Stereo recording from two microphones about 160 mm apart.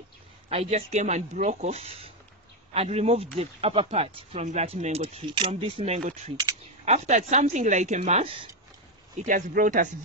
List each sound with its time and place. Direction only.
0.5 s speech: 40° right (ahead or behind)
5.9 s speech: 50° right (ahead or behind); by 8.5 s 35° right (ahead or behind)
9.2 s speech: 55° right (ahead or behind)